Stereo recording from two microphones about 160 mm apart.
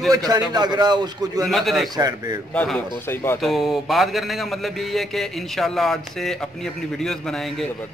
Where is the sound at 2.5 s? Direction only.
10° left (ahead or behind).